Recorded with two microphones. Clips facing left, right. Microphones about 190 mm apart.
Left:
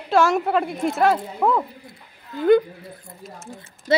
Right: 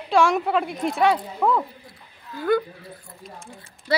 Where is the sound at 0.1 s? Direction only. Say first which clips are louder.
Left 1 dB; centre (ahead or behind).